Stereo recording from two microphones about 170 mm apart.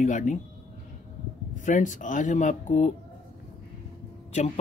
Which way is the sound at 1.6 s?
50° left (ahead or behind).